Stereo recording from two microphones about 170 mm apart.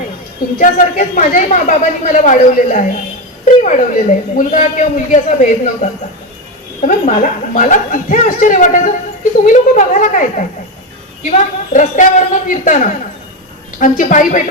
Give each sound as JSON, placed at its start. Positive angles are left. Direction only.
{"t": 0.6, "sound": "speech", "side_deg": 50}